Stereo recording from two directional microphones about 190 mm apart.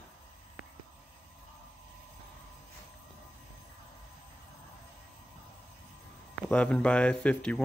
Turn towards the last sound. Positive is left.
turn(degrees=5)  # may be behind; listen again after turning